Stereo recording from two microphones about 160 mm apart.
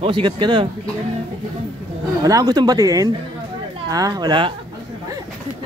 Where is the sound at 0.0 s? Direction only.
30° right (ahead or behind).